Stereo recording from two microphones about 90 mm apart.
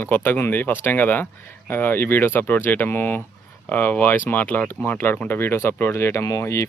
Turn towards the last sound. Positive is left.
turn(degrees=35)  # may be behind; listen again after turning